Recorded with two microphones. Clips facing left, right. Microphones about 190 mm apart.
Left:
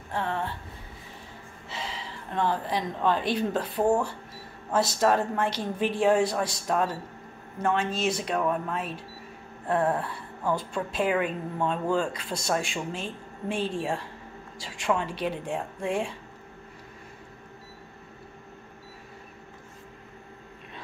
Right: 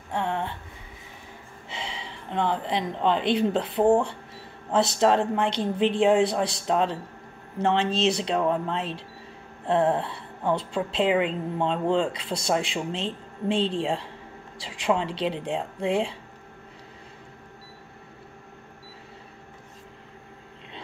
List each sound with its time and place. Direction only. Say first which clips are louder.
0.1 s speech: right 2 dB; 20° right (ahead or behind)
1.7 s a woman's voice: even; 20° right (ahead or behind)